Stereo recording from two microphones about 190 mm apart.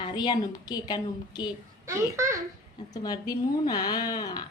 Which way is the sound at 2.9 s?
20° left (ahead or behind).